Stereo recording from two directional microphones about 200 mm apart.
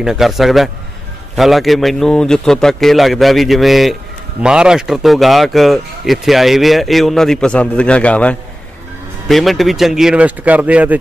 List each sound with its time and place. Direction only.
0.0 s speech: centre (ahead or behind)